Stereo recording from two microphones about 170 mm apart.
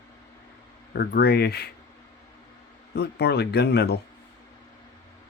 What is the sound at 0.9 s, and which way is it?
Speech, 70° left (ahead or behind).